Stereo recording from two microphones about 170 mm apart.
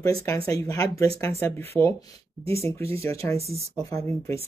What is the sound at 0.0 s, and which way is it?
Speech, 20° left (ahead or behind).